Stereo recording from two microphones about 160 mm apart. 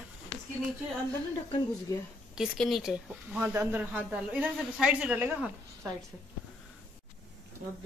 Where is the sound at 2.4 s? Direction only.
Centre (ahead or behind).